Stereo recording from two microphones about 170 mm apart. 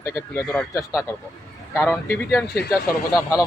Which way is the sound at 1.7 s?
15° left (ahead or behind).